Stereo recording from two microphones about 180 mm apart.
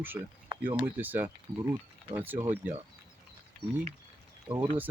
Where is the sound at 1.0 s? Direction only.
10° right (ahead or behind).